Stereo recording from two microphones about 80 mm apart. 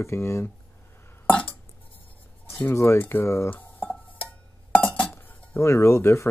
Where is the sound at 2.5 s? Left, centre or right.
Left.